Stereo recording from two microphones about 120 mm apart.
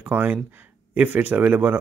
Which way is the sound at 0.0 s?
15° right (ahead or behind).